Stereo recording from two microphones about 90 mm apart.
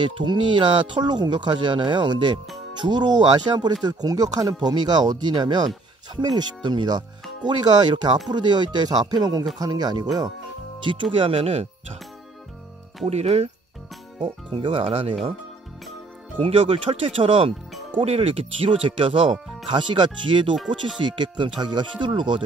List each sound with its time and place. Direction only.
0.0 s speech: 60° right (ahead or behind)
10.8 s speech: 65° right (ahead or behind); by 11.5 s 90° right
14.2 s speech: 70° right (ahead or behind); by 15.1 s 90° right
16.3 s speech: 90° right
19.7 s speech: 60° right (ahead or behind)